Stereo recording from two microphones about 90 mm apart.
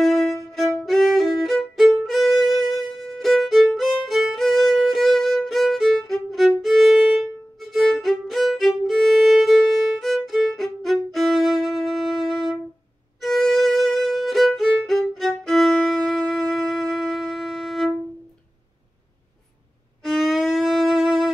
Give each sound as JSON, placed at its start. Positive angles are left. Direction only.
{"t": 0.0, "sound": "violin", "side_deg": 0}
{"t": 20.0, "sound": "violin", "side_deg": 0}